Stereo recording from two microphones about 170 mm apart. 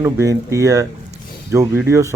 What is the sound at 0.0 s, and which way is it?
Speech, 20° right (ahead or behind).